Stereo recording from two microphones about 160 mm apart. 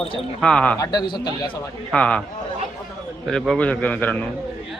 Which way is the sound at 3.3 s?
5° left (ahead or behind).